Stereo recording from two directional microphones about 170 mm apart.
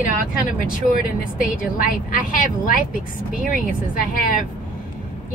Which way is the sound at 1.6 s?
55° left (ahead or behind).